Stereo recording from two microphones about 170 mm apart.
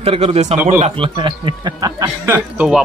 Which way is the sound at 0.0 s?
35° right (ahead or behind).